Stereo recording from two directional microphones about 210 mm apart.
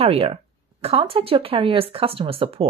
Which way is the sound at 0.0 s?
25° right (ahead or behind).